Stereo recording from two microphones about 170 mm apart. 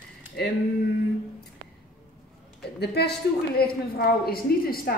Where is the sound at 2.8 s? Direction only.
75° left (ahead or behind).